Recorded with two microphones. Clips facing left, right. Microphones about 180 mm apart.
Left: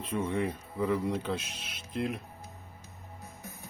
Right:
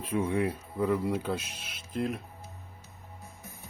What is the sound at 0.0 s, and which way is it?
Speech, 10° right (ahead or behind).